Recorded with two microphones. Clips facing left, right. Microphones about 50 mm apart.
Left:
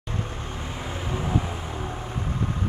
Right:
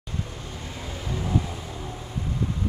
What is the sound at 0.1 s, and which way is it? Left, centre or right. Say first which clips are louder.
Vehicle: left 3 dB; left.